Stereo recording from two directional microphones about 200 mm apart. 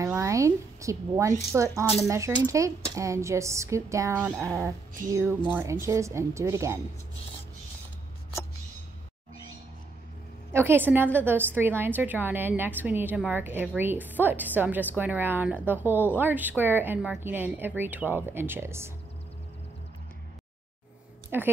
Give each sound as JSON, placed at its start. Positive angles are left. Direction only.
{"t": 0.0, "sound": "a sound", "side_deg": -15}
{"t": 1.5, "sound": "a woman's voice", "side_deg": -10}
{"t": 10.5, "sound": "a woman's voice", "side_deg": -10}
{"t": 21.3, "sound": "a woman's voice", "side_deg": -10}